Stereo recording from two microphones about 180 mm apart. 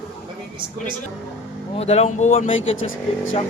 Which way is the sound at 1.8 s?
35° left (ahead or behind).